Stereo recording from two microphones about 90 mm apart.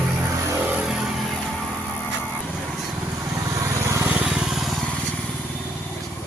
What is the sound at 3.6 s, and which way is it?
Vehicle, 35° right (ahead or behind).